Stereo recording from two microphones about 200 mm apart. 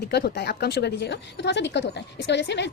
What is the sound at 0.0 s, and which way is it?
Speech, 55° left (ahead or behind).